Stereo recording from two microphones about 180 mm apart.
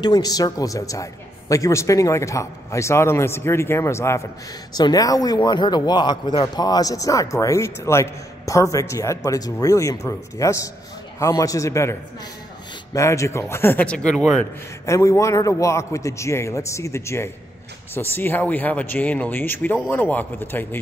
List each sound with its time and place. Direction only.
0.0 s a man's voice: 20° left (ahead or behind); by 14.4 s centre (ahead or behind)
14.9 s speech: 15° left (ahead or behind)